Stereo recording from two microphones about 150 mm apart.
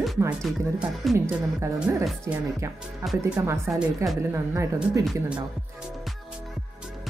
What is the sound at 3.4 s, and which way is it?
Speech, 15° right (ahead or behind).